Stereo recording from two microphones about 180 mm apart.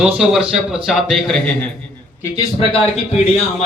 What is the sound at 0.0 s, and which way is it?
A man's voice, 5° right (ahead or behind).